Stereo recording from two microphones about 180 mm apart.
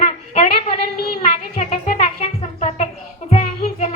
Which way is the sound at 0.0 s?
35° left (ahead or behind).